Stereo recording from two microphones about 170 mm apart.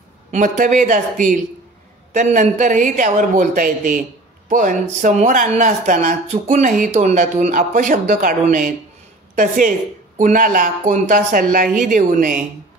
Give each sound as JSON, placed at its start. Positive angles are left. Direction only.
{"t": 0.3, "sound": "speech", "side_deg": -50}